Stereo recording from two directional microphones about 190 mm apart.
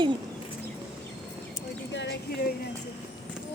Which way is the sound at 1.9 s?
70° left (ahead or behind).